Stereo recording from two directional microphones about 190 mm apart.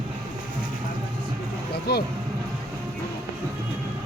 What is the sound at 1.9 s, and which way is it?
Speech, 60° left (ahead or behind).